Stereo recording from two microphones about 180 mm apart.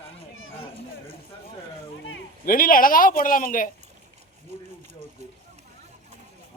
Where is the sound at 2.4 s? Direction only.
50° left (ahead or behind).